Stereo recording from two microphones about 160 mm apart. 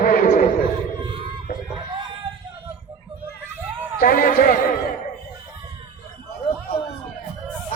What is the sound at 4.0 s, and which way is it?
Speech, 65° left (ahead or behind).